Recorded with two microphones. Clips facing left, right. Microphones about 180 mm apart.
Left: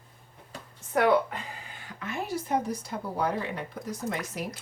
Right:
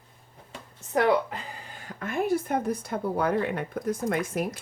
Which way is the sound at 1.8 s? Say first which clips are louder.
Right 7 dB; 50° right (ahead or behind).